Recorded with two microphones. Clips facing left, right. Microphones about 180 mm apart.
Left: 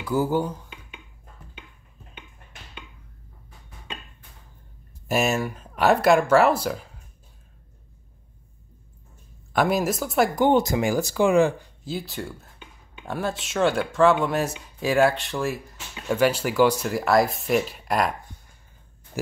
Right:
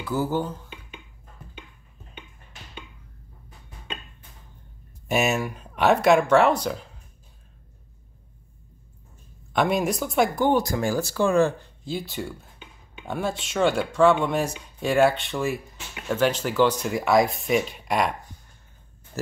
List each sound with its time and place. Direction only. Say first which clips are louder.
0.0 s speech: left 2 dB; 10° left (ahead or behind)
5.0 s speech: even; centre (ahead or behind)
9.5 s speech: left 1 dB; 5° left (ahead or behind)
10.3 s speech: left 2 dB; 20° left (ahead or behind)
11.8 s speech: right 1 dB; centre (ahead or behind)